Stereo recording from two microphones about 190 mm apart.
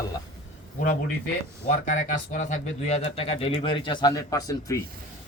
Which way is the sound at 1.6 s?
45° left (ahead or behind).